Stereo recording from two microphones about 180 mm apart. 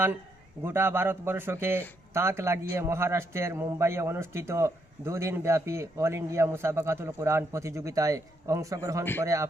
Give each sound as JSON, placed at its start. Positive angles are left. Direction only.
{"t": 0.6, "sound": "a man's voice", "side_deg": -10}